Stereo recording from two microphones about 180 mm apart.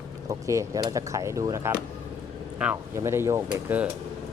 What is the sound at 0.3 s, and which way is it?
Speech, 15° right (ahead or behind).